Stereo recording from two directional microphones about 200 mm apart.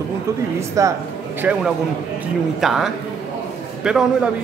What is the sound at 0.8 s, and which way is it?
A man's voice, 15° right (ahead or behind).